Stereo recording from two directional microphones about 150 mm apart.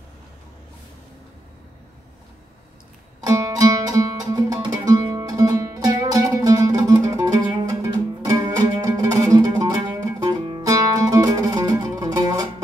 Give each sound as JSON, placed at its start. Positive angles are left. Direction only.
{"t": 3.2, "sound": "music", "side_deg": -25}